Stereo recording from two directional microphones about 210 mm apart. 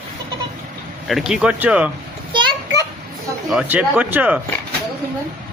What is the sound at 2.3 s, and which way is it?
Children playing, 20° right (ahead or behind).